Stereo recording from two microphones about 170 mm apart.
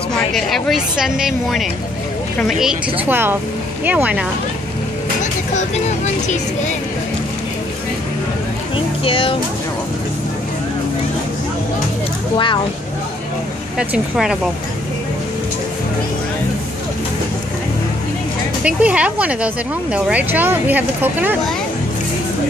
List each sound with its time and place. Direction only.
0.3 s a woman's voice: centre (ahead or behind)
5.2 s speech: 45° left (ahead or behind)
8.7 s speech: 30° left (ahead or behind)
13.7 s a woman's voice: 5° right (ahead or behind)
18.6 s speech: 5° right (ahead or behind)